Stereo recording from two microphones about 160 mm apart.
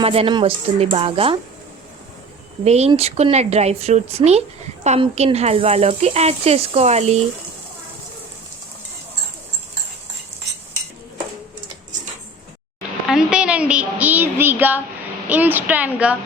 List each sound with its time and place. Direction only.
0.0 s speech: 35° right (ahead or behind)
2.6 s speech: 40° right (ahead or behind)
13.1 s a sound: 5° right (ahead or behind)
15.3 s a woman's voice: 10° right (ahead or behind)